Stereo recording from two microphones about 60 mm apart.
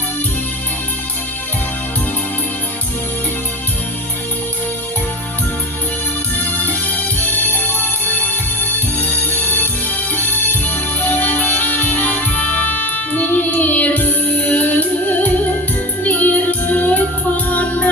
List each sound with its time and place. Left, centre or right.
9.3 s music: left
11.0 s music: left